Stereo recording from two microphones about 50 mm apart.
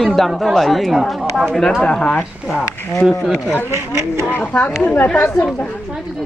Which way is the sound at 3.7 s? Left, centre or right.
Right.